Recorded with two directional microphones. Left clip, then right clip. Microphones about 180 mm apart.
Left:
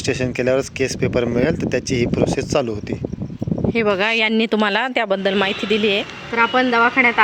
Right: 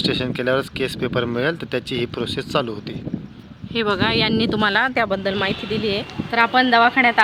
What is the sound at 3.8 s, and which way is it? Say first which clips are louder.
Speech: left 1 dB; 20° left (ahead or behind).